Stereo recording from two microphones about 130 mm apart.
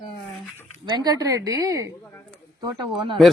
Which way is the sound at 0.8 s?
35° right (ahead or behind).